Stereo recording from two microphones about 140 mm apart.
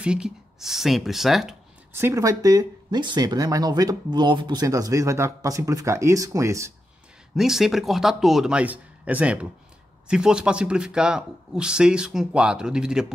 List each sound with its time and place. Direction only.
0.0 s speech: 5° right (ahead or behind)
2.0 s speech: 20° right (ahead or behind)
7.3 s speech: centre (ahead or behind)